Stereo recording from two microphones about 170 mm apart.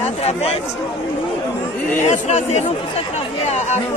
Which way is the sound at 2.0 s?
40° left (ahead or behind).